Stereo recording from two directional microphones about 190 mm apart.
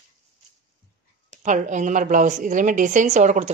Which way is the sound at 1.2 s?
40° right (ahead or behind).